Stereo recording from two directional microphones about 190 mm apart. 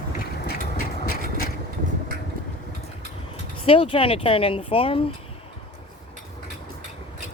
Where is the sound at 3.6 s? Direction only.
30° left (ahead or behind).